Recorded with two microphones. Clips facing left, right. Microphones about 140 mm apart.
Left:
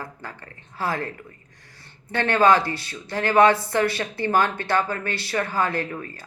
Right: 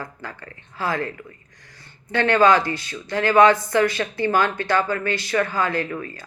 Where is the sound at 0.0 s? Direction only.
25° left (ahead or behind).